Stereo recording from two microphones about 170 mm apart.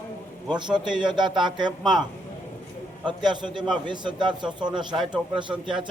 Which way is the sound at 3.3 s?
25° right (ahead or behind).